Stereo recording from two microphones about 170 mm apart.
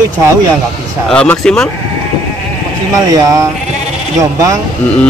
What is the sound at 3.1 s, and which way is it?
Speech, 20° right (ahead or behind).